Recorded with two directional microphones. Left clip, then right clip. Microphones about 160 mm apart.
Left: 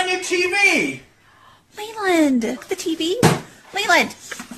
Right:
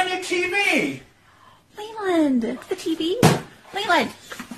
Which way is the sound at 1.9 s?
20° left (ahead or behind).